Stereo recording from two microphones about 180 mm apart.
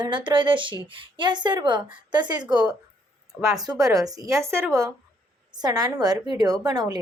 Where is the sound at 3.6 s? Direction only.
20° right (ahead or behind).